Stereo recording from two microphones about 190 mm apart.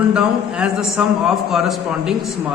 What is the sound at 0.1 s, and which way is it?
A woman's voice, 5° right (ahead or behind).